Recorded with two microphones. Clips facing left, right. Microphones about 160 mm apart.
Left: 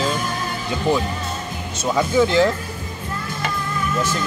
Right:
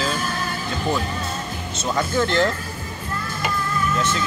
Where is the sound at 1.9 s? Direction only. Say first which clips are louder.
Left 4 dB; 10° left (ahead or behind).